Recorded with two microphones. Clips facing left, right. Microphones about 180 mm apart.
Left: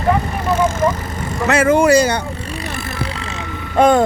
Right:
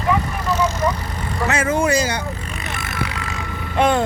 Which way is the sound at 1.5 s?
70° left (ahead or behind).